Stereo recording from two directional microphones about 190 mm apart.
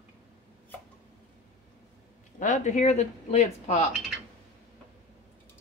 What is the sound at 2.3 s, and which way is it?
Speech, 40° left (ahead or behind).